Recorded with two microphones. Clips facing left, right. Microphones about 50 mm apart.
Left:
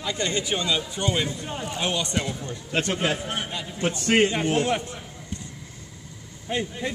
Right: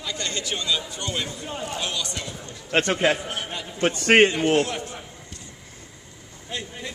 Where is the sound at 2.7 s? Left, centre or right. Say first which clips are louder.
Right 4 dB; right.